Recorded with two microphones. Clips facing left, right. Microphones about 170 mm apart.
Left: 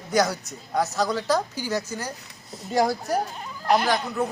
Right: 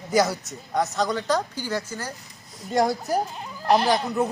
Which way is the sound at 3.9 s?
20° right (ahead or behind).